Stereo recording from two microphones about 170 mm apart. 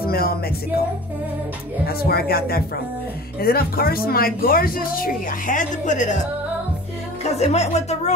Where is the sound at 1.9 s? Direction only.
65° left (ahead or behind); by 6.2 s 45° left (ahead or behind).